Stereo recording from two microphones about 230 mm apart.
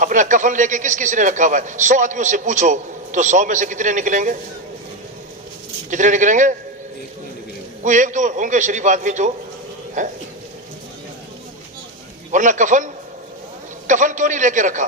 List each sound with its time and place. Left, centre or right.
0.0 s a man's voice: right
5.9 s a man's voice: right
7.9 s a man's voice: right
12.3 s a man's voice: right